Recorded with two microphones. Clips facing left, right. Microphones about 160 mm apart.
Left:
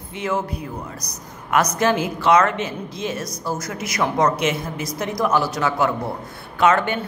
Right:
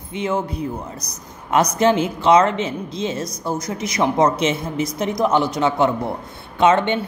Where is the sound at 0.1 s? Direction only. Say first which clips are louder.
Right 2 dB; 20° right (ahead or behind).